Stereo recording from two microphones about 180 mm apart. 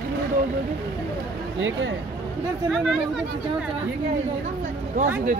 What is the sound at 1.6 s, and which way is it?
Speech, 90° right.